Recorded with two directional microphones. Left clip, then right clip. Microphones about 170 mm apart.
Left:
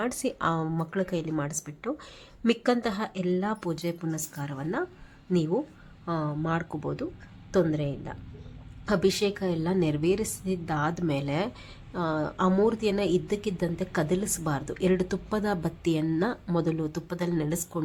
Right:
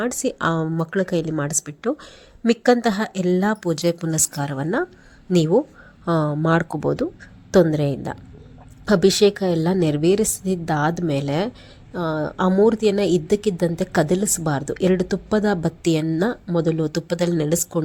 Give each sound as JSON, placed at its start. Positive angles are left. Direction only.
{"t": 0.0, "sound": "a woman's voice", "side_deg": -25}
{"t": 16.9, "sound": "speech", "side_deg": -40}